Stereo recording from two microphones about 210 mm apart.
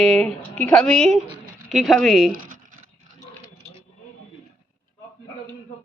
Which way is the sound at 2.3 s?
40° right (ahead or behind).